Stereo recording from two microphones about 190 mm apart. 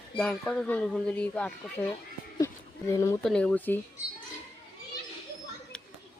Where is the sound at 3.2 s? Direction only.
5° left (ahead or behind).